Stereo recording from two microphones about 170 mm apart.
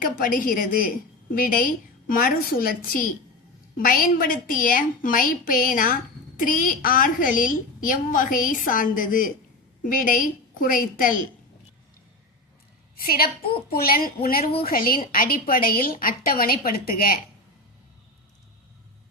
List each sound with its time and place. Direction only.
0.0 s a woman's voice: 55° left (ahead or behind)
13.0 s a woman's voice: 60° left (ahead or behind)